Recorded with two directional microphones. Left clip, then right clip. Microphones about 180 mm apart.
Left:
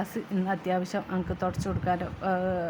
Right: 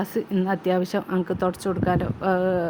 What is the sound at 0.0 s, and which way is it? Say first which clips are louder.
Speech: right 7 dB; 20° right (ahead or behind).